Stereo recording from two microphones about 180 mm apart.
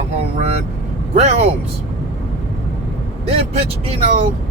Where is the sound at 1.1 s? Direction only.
40° right (ahead or behind).